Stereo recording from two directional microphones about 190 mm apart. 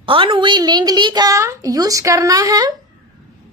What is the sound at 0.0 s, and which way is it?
A child's voice, 25° right (ahead or behind).